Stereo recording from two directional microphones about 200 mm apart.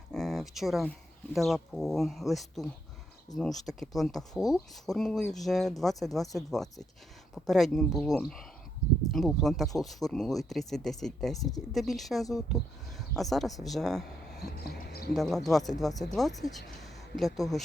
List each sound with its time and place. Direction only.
0.1 s speech: centre (ahead or behind)
14.6 s speech: 50° left (ahead or behind)
15.1 s speech: centre (ahead or behind)